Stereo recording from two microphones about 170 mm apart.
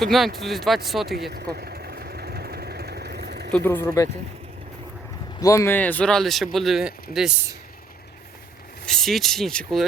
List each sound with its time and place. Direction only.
0.0 s speech: centre (ahead or behind)
1.3 s vehicle: 65° right (ahead or behind)
3.5 s speech: 15° left (ahead or behind)
5.4 s speech: 20° left (ahead or behind); by 7.3 s 5° right (ahead or behind)
8.9 s speech: centre (ahead or behind)